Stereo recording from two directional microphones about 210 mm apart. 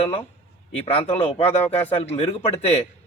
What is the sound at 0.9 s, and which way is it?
Speech, 30° left (ahead or behind).